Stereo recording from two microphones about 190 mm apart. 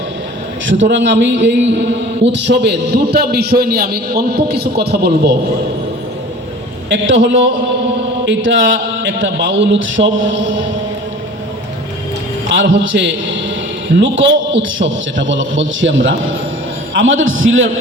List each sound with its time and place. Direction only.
0.7 s a man's voice: 75° right (ahead or behind); by 5.3 s 55° right (ahead or behind)
6.9 s a man's voice: 75° right (ahead or behind)
8.2 s mantra: 75° right (ahead or behind)
9.2 s a man's voice: 70° right (ahead or behind)
12.5 s a man's voice: 80° right